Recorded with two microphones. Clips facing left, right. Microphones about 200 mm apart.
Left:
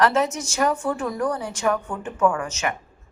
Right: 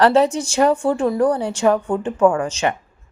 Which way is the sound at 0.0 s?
30° right (ahead or behind).